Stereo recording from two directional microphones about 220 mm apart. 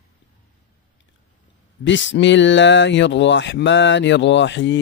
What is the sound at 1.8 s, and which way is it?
Speech, 55° left (ahead or behind).